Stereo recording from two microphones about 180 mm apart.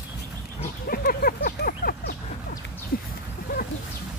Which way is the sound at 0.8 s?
55° left (ahead or behind).